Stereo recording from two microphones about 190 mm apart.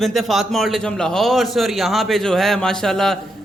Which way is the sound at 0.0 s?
Centre (ahead or behind).